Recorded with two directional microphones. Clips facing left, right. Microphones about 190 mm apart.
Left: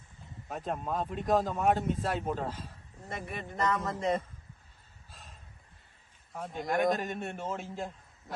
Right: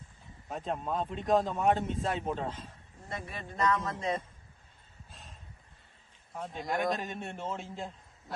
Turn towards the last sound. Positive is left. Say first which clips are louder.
# left 1 dB
turn(degrees=0)  # may be behind; listen again after turning